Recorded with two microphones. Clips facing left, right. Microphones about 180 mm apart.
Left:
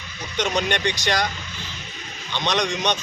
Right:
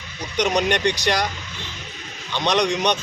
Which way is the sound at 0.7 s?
35° right (ahead or behind).